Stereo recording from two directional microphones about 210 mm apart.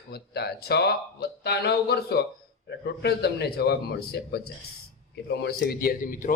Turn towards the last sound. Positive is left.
turn(degrees=40)  # may be behind; listen again after turning